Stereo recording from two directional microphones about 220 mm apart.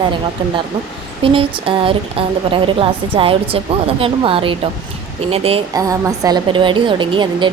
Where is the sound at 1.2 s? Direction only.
25° right (ahead or behind).